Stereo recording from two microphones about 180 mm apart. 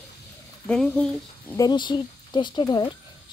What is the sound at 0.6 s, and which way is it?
Speech, 5° left (ahead or behind).